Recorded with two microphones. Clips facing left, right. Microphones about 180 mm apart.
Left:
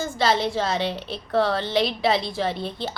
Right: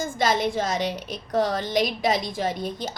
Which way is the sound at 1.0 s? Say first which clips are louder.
Left 2 dB; 15° right (ahead or behind).